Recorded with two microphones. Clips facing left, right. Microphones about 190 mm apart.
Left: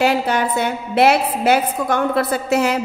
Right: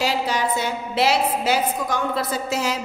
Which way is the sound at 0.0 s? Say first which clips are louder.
Left 5 dB; 55° left (ahead or behind).